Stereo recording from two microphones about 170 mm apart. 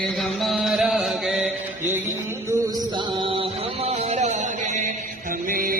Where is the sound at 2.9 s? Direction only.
25° right (ahead or behind); by 4.9 s 45° right (ahead or behind).